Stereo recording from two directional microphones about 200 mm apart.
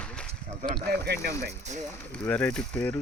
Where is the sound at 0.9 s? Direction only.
55° right (ahead or behind).